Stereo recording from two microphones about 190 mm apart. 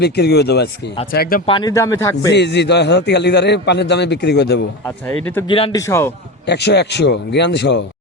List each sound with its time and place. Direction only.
0.0 s a man's voice: 60° left (ahead or behind)
1.5 s speech: 25° left (ahead or behind)
2.3 s a man's voice: 65° left (ahead or behind)
5.5 s speech: 30° left (ahead or behind)
5.7 s speech: 15° left (ahead or behind)
6.4 s a man's voice: 60° left (ahead or behind)